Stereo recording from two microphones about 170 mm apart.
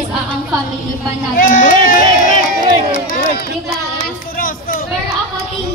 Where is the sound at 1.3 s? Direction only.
55° left (ahead or behind).